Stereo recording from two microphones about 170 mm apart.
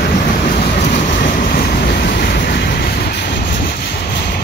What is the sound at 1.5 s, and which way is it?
Train, 65° left (ahead or behind).